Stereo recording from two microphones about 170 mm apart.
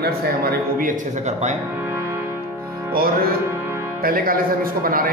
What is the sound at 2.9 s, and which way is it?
Speech, 60° right (ahead or behind).